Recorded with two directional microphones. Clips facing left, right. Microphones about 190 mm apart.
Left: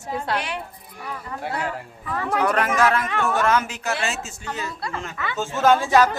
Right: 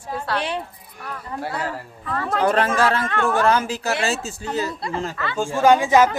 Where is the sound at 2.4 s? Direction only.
30° right (ahead or behind).